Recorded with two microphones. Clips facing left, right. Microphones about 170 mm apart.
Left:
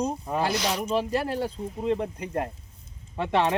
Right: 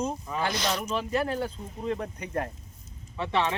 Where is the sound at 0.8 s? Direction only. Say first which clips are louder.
Left 3 dB; 35° left (ahead or behind).